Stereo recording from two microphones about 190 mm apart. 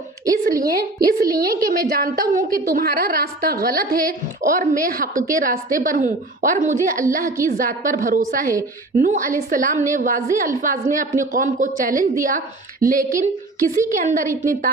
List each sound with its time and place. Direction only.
0.6 s a woman's voice: 50° right (ahead or behind)